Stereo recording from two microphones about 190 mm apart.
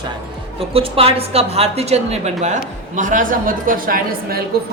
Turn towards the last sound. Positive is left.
turn(degrees=-50)  # may be behind; listen again after turning